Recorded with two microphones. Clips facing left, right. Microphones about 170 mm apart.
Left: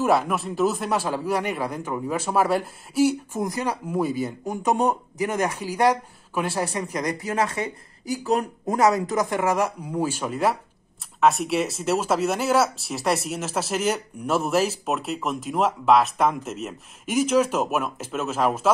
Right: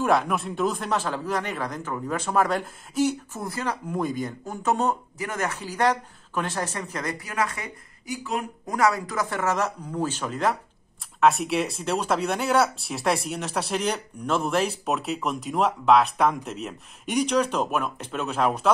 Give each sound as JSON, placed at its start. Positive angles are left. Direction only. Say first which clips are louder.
{"t": 0.0, "sound": "speech", "louder": "left 1 dB", "side_deg": 0}
{"t": 7.2, "sound": "speech", "louder": "left 4 dB", "side_deg": 25}
{"t": 8.6, "sound": "speech", "louder": "left 3 dB", "side_deg": 20}